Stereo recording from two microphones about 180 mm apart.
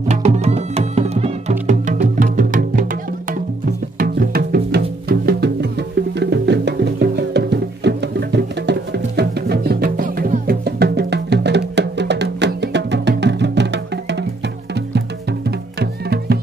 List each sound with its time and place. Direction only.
0.1 s music: 35° right (ahead or behind)
4.0 s music: 55° right (ahead or behind); by 14.2 s 75° right (ahead or behind)
15.8 s music: 65° right (ahead or behind)